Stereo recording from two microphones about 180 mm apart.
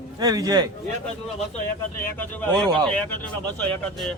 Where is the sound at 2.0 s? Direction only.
10° left (ahead or behind).